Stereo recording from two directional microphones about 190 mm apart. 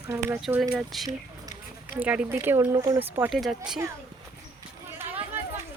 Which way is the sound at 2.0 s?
10° right (ahead or behind).